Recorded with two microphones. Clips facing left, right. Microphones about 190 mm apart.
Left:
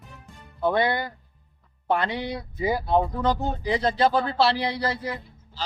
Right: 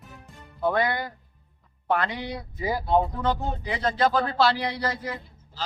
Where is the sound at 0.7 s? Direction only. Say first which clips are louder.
Left 2 dB; 30° left (ahead or behind).